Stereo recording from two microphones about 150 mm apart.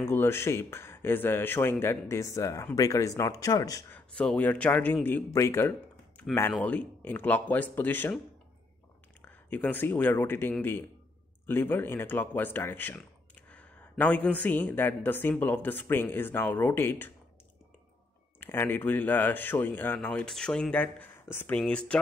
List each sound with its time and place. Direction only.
0.0 s speech: 15° left (ahead or behind)
3.9 s speech: 10° left (ahead or behind)
9.2 s speech: 10° left (ahead or behind)
18.4 s speech: 15° left (ahead or behind)